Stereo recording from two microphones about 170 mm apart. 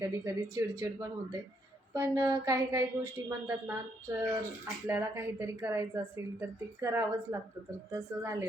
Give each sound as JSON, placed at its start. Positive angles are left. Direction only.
{"t": 0.0, "sound": "a woman's voice", "side_deg": -15}
{"t": 4.9, "sound": "a woman's voice", "side_deg": -15}